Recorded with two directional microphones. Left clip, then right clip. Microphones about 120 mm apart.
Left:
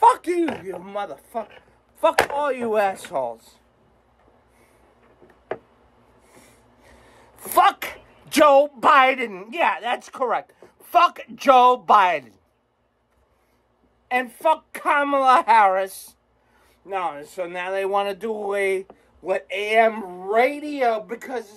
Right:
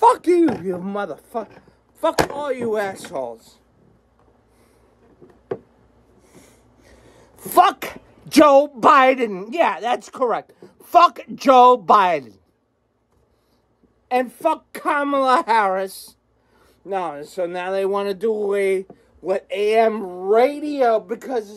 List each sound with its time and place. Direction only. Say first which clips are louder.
0.0 s speech: right 3 dB; 30° right (ahead or behind)
2.5 s speech: left 1 dB; 15° left (ahead or behind)
6.2 s a sound: right 2 dB; 10° right (ahead or behind)
7.4 s a woman's voice: right 2 dB; 25° right (ahead or behind)
14.0 s speech: right 1 dB; 20° right (ahead or behind)